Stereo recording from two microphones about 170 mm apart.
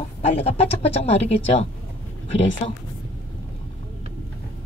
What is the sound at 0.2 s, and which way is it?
Speech, 35° left (ahead or behind).